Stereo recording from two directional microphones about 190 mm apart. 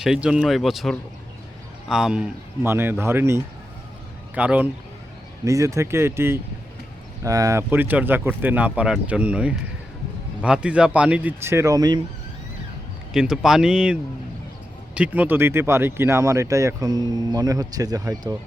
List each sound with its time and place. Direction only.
0.0 s speech: 5° right (ahead or behind); by 12.0 s 20° right (ahead or behind)
13.1 s speech: 5° right (ahead or behind); by 18.3 s 20° right (ahead or behind)